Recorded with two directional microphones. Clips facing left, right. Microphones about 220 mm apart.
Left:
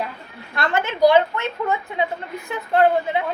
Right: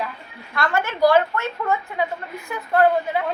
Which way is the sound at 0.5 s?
20° left (ahead or behind).